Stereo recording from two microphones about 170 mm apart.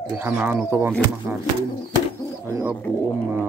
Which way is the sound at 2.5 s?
15° right (ahead or behind).